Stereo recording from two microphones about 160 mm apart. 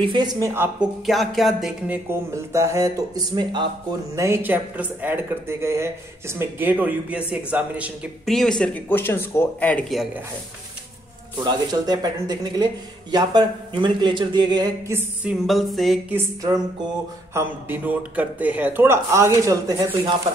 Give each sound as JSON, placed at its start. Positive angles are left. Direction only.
{"t": 0.0, "sound": "speech", "side_deg": -30}
{"t": 1.0, "sound": "a sound", "side_deg": 0}
{"t": 2.0, "sound": "speech", "side_deg": -20}
{"t": 4.1, "sound": "speech", "side_deg": -15}
{"t": 8.3, "sound": "speech", "side_deg": 5}
{"t": 11.3, "sound": "speech", "side_deg": -25}
{"t": 14.9, "sound": "speech", "side_deg": -15}
{"t": 15.4, "sound": "a sound", "side_deg": 0}
{"t": 16.1, "sound": "speech", "side_deg": -15}